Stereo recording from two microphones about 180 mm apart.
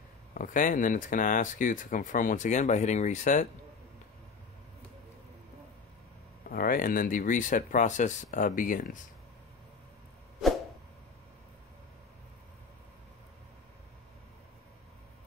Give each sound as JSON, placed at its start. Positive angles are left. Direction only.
{"t": 0.3, "sound": "speech", "side_deg": 50}
{"t": 6.5, "sound": "speech", "side_deg": 50}